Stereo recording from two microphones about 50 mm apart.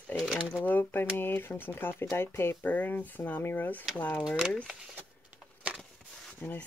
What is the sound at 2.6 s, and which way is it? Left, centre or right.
Speech, left.